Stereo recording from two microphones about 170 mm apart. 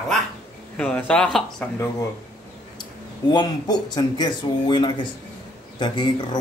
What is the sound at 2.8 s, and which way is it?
Speech, 25° left (ahead or behind).